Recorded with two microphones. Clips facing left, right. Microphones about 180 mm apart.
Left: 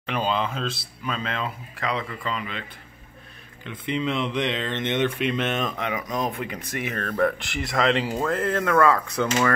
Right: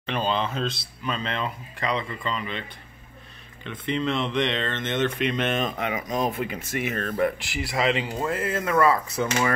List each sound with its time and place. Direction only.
0.0 s speech: 5° left (ahead or behind)
3.6 s speech: 10° left (ahead or behind)
5.2 s speech: centre (ahead or behind)
5.6 s speech: 40° right (ahead or behind)
5.9 s speech: 25° right (ahead or behind)
7.3 s speech: centre (ahead or behind)